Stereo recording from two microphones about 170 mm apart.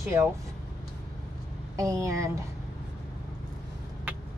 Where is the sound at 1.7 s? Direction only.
20° right (ahead or behind).